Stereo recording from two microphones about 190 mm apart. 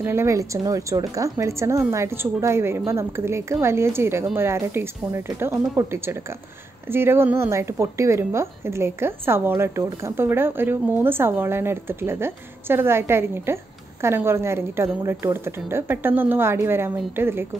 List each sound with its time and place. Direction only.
0.0 s speech: 15° right (ahead or behind)